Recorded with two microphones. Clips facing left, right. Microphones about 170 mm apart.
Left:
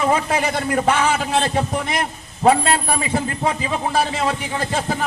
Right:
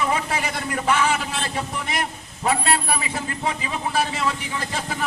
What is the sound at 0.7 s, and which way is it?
A man's voice, 45° left (ahead or behind).